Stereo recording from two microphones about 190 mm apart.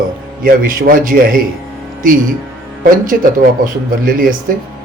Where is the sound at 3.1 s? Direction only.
50° right (ahead or behind).